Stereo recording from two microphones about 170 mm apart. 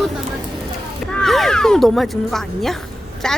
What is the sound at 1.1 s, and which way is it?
Speech, 5° left (ahead or behind).